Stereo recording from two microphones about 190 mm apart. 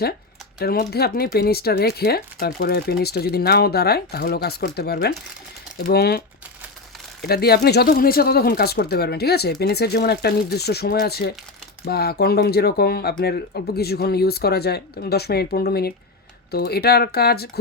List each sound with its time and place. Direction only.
0.6 s speech: 55° left (ahead or behind)